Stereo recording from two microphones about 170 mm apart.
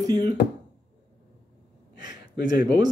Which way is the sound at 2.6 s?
25° right (ahead or behind).